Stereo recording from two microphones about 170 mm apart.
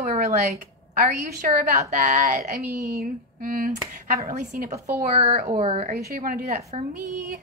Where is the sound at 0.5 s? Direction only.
50° right (ahead or behind).